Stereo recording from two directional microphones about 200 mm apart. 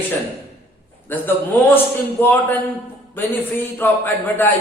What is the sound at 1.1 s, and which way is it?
A man's voice, 10° left (ahead or behind).